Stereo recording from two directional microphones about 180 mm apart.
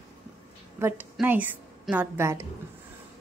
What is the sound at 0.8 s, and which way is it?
A woman's voice, 15° right (ahead or behind).